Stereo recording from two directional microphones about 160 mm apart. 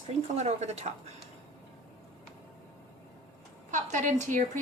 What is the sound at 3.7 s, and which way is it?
Speech, 50° right (ahead or behind).